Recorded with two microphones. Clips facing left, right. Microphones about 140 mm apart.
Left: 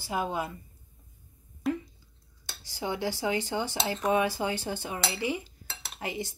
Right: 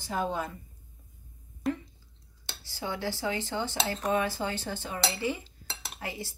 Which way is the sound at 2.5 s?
15° left (ahead or behind).